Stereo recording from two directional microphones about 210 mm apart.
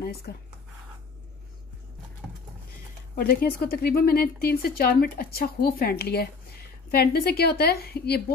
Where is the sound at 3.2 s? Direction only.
45° left (ahead or behind).